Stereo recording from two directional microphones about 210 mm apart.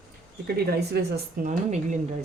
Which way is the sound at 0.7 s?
50° right (ahead or behind).